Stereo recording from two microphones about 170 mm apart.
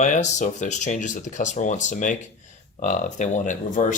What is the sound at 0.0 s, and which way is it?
Speech, 45° left (ahead or behind).